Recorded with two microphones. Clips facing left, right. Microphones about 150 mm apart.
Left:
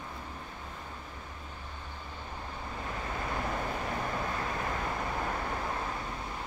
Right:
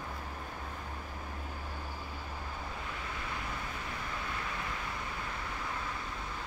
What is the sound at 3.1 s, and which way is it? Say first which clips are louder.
Vehicle: left 6 dB; 45° left (ahead or behind).